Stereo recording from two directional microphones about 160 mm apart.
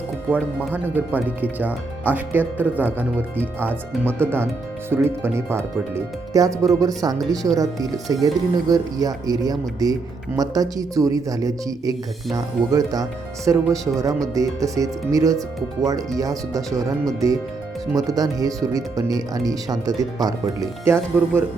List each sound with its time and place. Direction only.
0.3 s speech: 10° right (ahead or behind)